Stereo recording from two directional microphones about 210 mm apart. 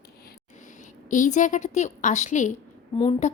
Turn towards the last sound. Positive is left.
turn(degrees=30)  # may be behind; listen again after turning